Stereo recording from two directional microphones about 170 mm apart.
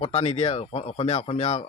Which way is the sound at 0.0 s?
40° left (ahead or behind).